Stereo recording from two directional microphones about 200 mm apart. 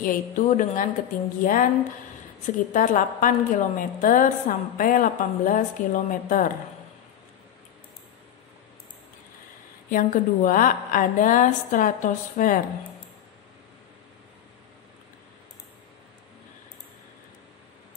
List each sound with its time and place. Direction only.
0.0 s a woman's voice: 40° left (ahead or behind)
9.8 s a woman's voice: 45° left (ahead or behind)